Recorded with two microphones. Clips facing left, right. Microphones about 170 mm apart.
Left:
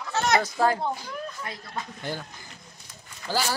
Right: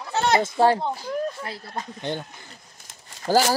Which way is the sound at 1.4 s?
30° right (ahead or behind).